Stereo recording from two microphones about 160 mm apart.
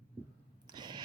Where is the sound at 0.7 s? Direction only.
25° right (ahead or behind).